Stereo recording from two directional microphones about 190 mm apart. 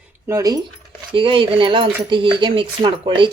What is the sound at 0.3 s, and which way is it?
Speech, 20° right (ahead or behind).